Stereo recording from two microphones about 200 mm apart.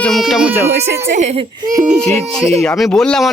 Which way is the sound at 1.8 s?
Centre (ahead or behind).